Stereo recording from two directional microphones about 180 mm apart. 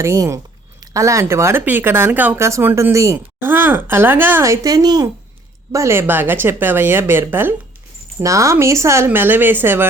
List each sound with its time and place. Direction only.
0.0 s speech: 15° right (ahead or behind)